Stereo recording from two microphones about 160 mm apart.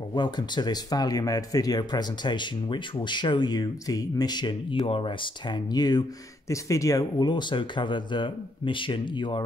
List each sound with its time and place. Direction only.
0.1 s speech: 25° left (ahead or behind)